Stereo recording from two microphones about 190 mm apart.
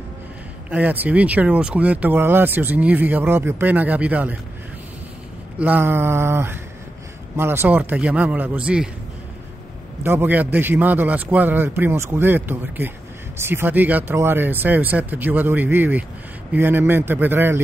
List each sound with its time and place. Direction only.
0.7 s speech: 10° right (ahead or behind)
5.6 s speech: 10° right (ahead or behind)
10.0 s speech: 10° right (ahead or behind)